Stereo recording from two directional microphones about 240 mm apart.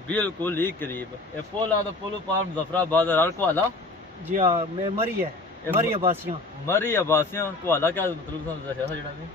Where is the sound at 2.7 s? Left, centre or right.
Centre.